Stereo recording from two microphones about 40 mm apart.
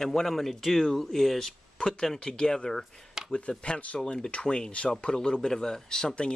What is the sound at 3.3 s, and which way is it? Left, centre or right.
Speech, left.